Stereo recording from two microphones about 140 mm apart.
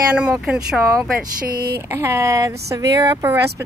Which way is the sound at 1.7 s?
20° right (ahead or behind).